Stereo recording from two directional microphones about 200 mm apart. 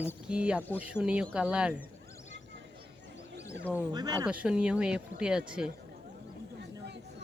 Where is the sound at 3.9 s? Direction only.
20° right (ahead or behind).